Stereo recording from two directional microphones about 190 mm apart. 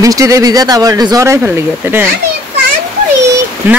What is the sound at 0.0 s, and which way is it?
Speech, 15° right (ahead or behind).